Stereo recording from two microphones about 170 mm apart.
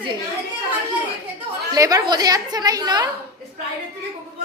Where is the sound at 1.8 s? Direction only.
20° right (ahead or behind).